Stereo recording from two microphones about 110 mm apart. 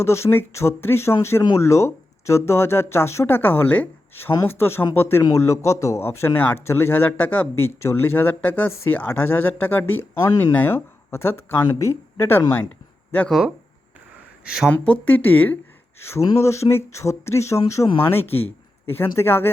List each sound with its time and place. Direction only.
0.0 s a man's voice: 25° left (ahead or behind)
13.2 s speech: centre (ahead or behind)
14.7 s a man's voice: 15° left (ahead or behind)
19.2 s a man's voice: 20° left (ahead or behind)